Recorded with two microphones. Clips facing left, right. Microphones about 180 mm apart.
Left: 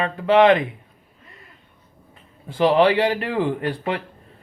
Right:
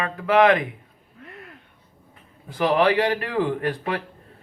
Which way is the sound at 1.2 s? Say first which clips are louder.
Right 9 dB; 65° right (ahead or behind).